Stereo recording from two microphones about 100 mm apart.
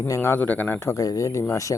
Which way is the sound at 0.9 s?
35° left (ahead or behind).